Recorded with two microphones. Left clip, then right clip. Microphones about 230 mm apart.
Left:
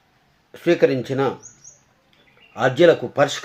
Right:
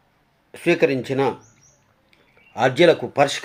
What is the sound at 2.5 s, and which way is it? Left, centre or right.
Speech, right.